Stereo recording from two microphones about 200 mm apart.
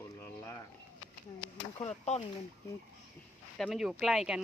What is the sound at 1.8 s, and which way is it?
Speech, 35° left (ahead or behind).